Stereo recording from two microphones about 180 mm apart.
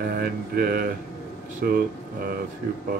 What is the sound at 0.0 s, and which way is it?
Mantra, 55° right (ahead or behind).